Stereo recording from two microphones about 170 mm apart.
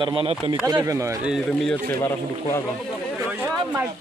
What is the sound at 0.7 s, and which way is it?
Speech, 15° right (ahead or behind).